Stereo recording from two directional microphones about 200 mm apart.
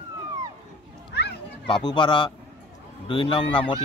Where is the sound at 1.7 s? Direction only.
25° left (ahead or behind).